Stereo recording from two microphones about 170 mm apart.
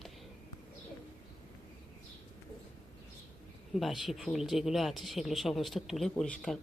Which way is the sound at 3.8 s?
Centre (ahead or behind).